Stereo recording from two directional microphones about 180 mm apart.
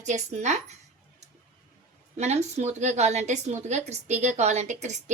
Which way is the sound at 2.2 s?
40° right (ahead or behind).